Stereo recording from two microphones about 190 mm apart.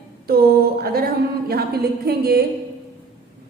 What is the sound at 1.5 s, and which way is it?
Speech, 55° right (ahead or behind).